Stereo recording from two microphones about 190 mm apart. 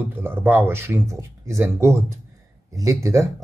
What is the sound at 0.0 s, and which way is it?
A man's voice, 10° right (ahead or behind).